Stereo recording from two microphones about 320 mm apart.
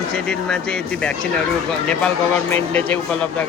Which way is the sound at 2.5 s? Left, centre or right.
Centre.